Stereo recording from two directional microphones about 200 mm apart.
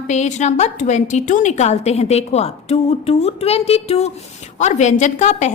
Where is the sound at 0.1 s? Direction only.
35° left (ahead or behind).